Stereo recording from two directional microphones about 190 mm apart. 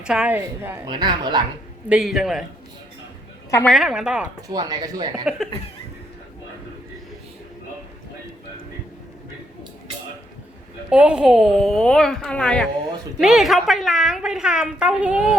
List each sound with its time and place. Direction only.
0.0 s a woman's voice: 5° right (ahead or behind)
0.9 s speech: 25° right (ahead or behind)
1.9 s a woman's voice: centre (ahead or behind)
3.7 s a woman's voice: centre (ahead or behind)
4.4 s speech: 20° right (ahead or behind)
10.8 s a woman's voice: 5° right (ahead or behind)